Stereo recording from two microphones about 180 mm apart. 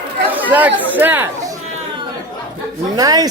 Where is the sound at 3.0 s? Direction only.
20° right (ahead or behind).